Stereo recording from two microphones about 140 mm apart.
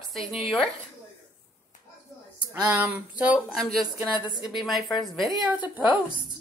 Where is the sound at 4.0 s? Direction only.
10° right (ahead or behind).